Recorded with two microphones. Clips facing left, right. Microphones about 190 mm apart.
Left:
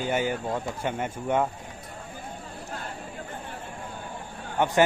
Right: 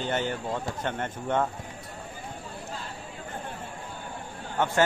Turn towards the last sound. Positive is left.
turn(degrees=15)  # may be behind; listen again after turning